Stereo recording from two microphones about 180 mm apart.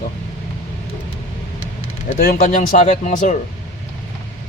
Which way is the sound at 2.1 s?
50° left (ahead or behind).